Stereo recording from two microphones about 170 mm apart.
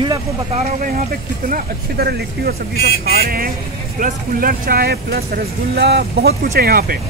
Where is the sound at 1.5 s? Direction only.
70° right (ahead or behind).